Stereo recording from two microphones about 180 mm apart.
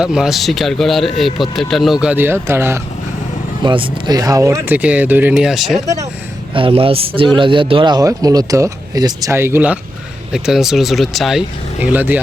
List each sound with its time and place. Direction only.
0.0 s speech: 5° right (ahead or behind)
3.6 s speech: 25° right (ahead or behind); by 5.8 s centre (ahead or behind)
6.5 s speech: 30° right (ahead or behind); by 12.2 s 10° right (ahead or behind)